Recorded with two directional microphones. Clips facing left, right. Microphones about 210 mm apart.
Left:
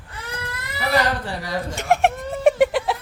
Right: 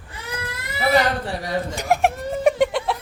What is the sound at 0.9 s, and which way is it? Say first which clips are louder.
Speech: right 2 dB; 25° right (ahead or behind).